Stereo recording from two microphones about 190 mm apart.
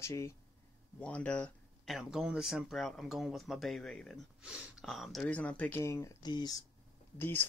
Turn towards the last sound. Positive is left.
turn(degrees=10)  # may be behind; listen again after turning